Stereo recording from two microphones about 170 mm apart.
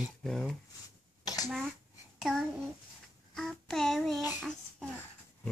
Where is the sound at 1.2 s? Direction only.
20° left (ahead or behind).